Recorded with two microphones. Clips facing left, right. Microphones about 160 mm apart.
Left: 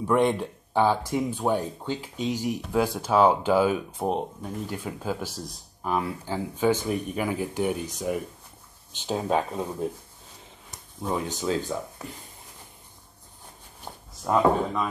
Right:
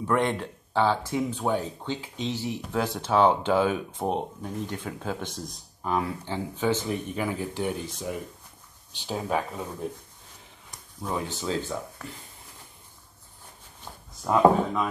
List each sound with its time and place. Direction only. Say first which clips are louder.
0.0 s speech: left 3 dB; 10° left (ahead or behind)
11.0 s speech: left 2 dB; 20° left (ahead or behind)
13.9 s a sound: left 3 dB; 30° left (ahead or behind)
14.2 s speech: right 2 dB; centre (ahead or behind)